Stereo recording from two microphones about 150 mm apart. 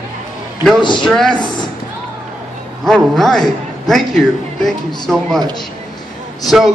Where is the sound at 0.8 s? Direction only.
30° left (ahead or behind).